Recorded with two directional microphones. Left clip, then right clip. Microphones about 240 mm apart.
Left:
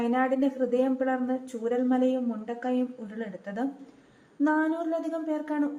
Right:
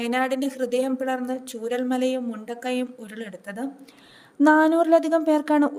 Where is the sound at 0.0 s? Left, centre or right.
Right.